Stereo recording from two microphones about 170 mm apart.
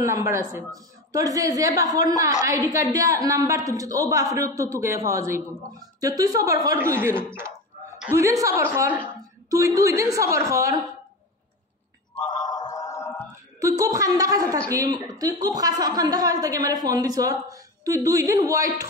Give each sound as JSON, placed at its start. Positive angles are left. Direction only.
{"t": 0.0, "sound": "a man's voice", "side_deg": -15}
{"t": 12.3, "sound": "music", "side_deg": 25}
{"t": 13.6, "sound": "a woman's voice", "side_deg": -20}